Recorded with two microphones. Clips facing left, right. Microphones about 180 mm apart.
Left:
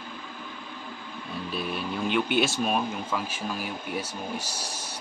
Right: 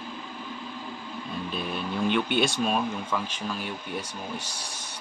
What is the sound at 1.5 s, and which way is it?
Speech, 5° left (ahead or behind).